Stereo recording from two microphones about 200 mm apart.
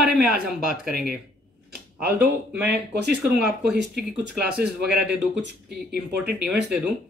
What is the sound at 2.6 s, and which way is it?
Speech, 55° right (ahead or behind).